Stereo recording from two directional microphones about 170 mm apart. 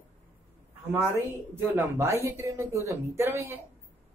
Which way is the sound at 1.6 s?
15° right (ahead or behind).